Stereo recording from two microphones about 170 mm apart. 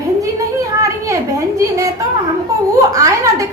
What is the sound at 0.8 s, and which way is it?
A child's voice, 20° right (ahead or behind).